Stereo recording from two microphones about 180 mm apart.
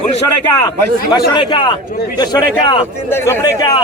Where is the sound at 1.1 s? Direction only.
25° left (ahead or behind).